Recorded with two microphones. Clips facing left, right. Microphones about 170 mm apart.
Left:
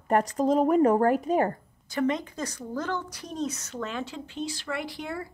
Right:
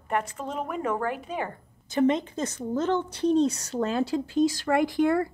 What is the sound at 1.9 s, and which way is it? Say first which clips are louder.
A woman's voice: right 4 dB; 20° right (ahead or behind).